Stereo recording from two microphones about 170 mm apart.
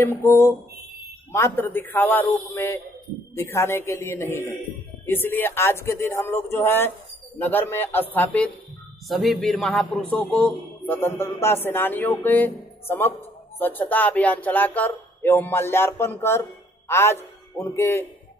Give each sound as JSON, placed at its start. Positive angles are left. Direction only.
{"t": 0.0, "sound": "a man's voice", "side_deg": 15}